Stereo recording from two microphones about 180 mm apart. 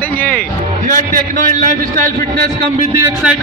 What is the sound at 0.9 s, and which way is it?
A man's voice, 50° right (ahead or behind).